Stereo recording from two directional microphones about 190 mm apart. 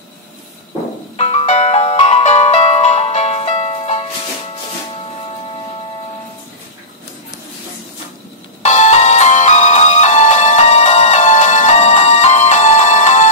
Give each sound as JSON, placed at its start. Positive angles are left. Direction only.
{"t": 1.1, "sound": "music", "side_deg": 35}
{"t": 8.6, "sound": "music", "side_deg": 35}